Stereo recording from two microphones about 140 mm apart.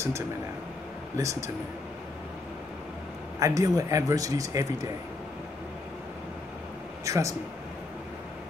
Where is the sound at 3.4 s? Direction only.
25° right (ahead or behind).